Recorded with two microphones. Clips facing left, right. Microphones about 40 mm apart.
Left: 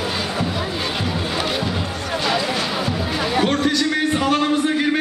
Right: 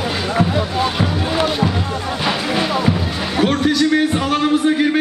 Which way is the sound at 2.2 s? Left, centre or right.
Centre.